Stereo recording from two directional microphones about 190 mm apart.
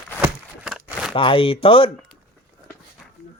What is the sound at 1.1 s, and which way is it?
Speech, 25° left (ahead or behind).